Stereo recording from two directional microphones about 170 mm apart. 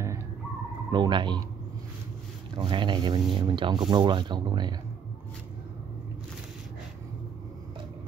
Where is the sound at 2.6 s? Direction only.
30° right (ahead or behind).